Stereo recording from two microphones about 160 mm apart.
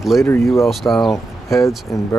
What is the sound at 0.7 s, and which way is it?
Speech, centre (ahead or behind).